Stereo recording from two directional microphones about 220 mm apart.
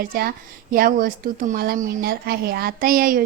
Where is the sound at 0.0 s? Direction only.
40° right (ahead or behind).